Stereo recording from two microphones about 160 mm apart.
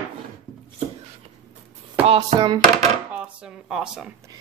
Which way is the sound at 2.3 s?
40° right (ahead or behind).